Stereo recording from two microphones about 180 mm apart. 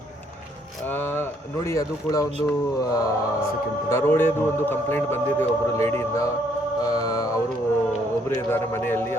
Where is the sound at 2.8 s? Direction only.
20° left (ahead or behind).